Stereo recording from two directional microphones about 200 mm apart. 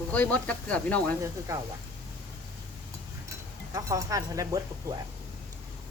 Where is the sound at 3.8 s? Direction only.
15° right (ahead or behind).